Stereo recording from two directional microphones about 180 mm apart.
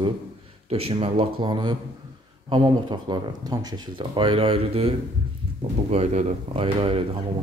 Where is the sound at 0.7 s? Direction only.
30° right (ahead or behind).